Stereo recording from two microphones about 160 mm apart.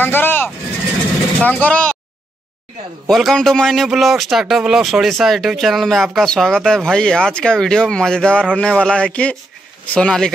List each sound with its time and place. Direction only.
0.0 s vehicle: 15° left (ahead or behind)
1.4 s speech: 10° left (ahead or behind)
3.1 s a man's voice: centre (ahead or behind)